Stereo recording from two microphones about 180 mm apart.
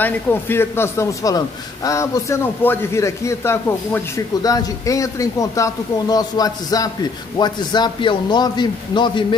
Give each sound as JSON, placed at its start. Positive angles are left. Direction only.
{"t": 0.0, "sound": "a man's voice", "side_deg": 10}